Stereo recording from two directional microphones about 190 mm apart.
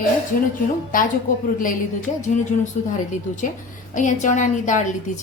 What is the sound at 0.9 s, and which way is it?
A woman's voice, 45° left (ahead or behind).